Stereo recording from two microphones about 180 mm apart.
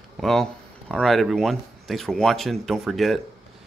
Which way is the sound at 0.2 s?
Centre (ahead or behind).